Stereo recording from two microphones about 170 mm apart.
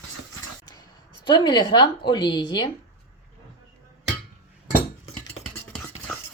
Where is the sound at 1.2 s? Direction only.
25° left (ahead or behind).